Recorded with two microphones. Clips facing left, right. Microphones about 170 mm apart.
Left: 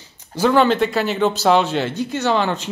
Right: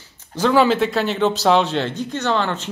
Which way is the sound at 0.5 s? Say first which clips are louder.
Right 1 dB; 5° right (ahead or behind).